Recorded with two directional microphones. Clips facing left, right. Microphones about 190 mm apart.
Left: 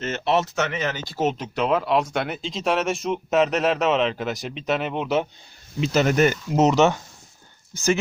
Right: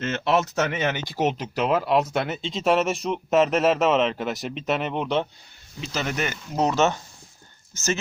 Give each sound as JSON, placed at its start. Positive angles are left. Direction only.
{"t": 0.6, "sound": "speech", "side_deg": -30}
{"t": 1.4, "sound": "speech", "side_deg": -5}
{"t": 5.8, "sound": "speech", "side_deg": 60}
{"t": 6.6, "sound": "speech", "side_deg": 20}